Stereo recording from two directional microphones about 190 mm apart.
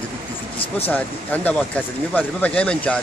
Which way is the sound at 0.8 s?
10° left (ahead or behind).